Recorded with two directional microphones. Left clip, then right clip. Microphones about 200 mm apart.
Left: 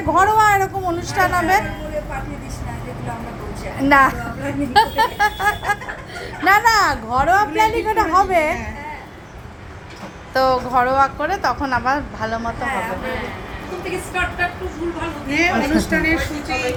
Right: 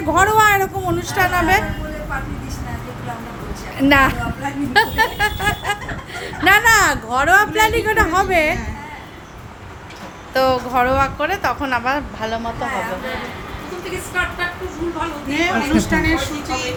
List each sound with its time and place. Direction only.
0.1 s a woman's voice: 15° right (ahead or behind)
3.8 s a woman's voice: 10° right (ahead or behind)
10.3 s a woman's voice: 10° right (ahead or behind)
15.4 s a woman's voice: 10° right (ahead or behind)